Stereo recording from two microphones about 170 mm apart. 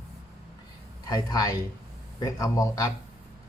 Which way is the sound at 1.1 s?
25° left (ahead or behind).